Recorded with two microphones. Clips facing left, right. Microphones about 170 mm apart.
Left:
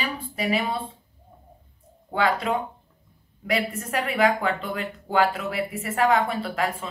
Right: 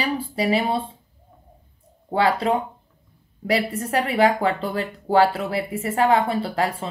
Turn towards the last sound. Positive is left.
turn(degrees=-30)  # may be behind; listen again after turning